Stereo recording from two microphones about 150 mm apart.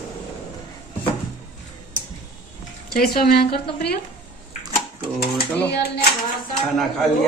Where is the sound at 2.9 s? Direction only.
85° left.